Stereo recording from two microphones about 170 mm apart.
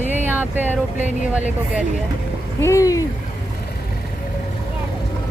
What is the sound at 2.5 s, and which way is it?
Speech, 15° left (ahead or behind).